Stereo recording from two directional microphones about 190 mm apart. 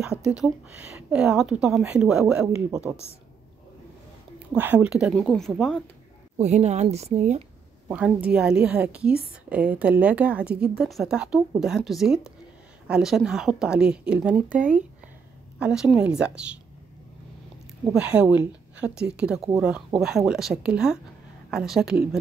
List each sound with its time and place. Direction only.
0.2 s a woman's voice: 5° right (ahead or behind)
4.6 s a woman's voice: 10° right (ahead or behind)
6.3 s a woman's voice: 35° right (ahead or behind)
7.9 s a woman's voice: 5° right (ahead or behind)
17.9 s a woman's voice: 5° right (ahead or behind)